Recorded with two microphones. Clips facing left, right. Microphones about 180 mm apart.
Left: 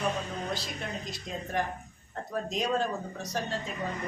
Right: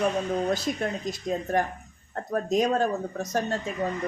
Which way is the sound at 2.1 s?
45° right (ahead or behind).